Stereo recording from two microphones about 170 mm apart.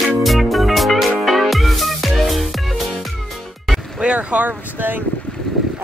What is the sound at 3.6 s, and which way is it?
Vehicle, 5° right (ahead or behind).